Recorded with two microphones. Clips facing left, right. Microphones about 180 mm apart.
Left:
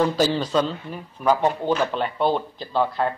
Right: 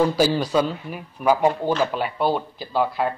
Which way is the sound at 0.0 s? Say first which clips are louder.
Right 1 dB; 10° right (ahead or behind).